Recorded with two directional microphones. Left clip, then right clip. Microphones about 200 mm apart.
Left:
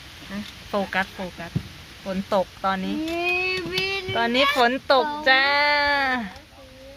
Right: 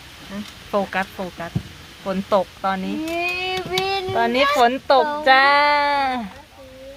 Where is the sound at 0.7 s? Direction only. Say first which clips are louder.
Right 3 dB; 5° right (ahead or behind).